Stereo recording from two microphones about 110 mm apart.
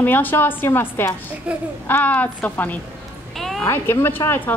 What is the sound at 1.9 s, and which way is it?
Speech, 15° left (ahead or behind).